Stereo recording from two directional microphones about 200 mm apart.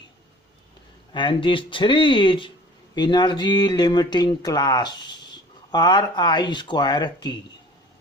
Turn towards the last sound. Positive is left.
turn(degrees=20)  # may be behind; listen again after turning